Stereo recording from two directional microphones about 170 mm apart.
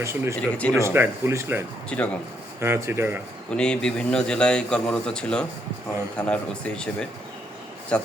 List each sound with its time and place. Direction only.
0.0 s speech: 15° right (ahead or behind)
0.5 s speech: 10° left (ahead or behind)
0.8 s speech: 15° right (ahead or behind)
1.9 s speech: 5° left (ahead or behind)
2.6 s speech: 15° right (ahead or behind)
3.6 s a man's voice: 5° left (ahead or behind)